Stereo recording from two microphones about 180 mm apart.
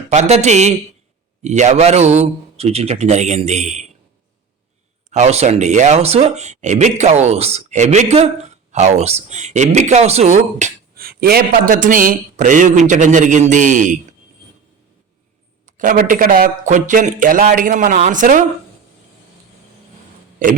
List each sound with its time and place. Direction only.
0.1 s speech: 35° right (ahead or behind)
5.1 s speech: 35° right (ahead or behind)
10.9 s a man's voice: 55° right (ahead or behind)
15.6 s a man's voice: 50° right (ahead or behind)